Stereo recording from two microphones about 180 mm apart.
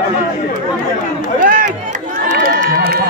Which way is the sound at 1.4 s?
50° right (ahead or behind).